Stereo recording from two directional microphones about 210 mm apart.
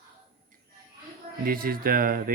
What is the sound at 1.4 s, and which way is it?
Speech, 45° right (ahead or behind).